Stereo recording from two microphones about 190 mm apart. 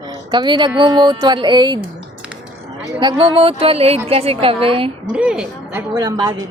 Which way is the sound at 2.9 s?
25° right (ahead or behind).